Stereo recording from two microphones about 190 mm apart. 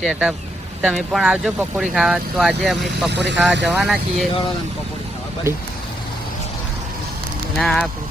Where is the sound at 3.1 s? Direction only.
65° right (ahead or behind).